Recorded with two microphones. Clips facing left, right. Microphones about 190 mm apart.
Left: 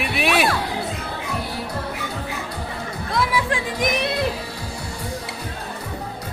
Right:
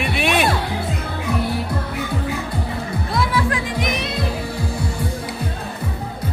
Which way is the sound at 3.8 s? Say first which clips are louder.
Left 2 dB; 55° left (ahead or behind).